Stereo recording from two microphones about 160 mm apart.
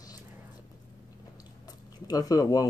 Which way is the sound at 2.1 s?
25° left (ahead or behind).